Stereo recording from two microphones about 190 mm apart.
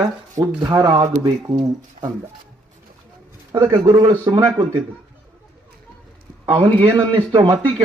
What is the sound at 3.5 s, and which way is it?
A man's voice, 20° right (ahead or behind).